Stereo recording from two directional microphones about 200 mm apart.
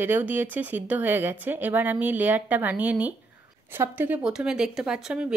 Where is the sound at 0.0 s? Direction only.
10° right (ahead or behind).